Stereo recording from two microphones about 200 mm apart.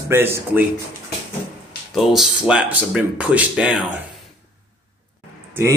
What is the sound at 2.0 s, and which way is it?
Speech, centre (ahead or behind).